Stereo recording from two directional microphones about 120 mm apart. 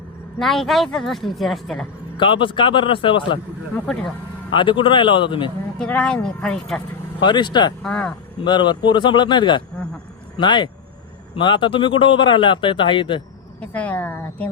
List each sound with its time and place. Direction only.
0.3 s a woman's voice: centre (ahead or behind)
2.1 s speech: 45° left (ahead or behind)
4.5 s speech: 40° left (ahead or behind)
5.8 s speech: 5° left (ahead or behind)
7.2 s speech: 40° left (ahead or behind)
7.9 s speech: 5° left (ahead or behind)
8.4 s speech: 40° left (ahead or behind)
13.6 s speech: 10° left (ahead or behind)